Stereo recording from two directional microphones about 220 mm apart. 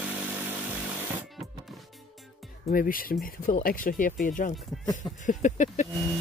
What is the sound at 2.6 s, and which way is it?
Speech, 40° left (ahead or behind).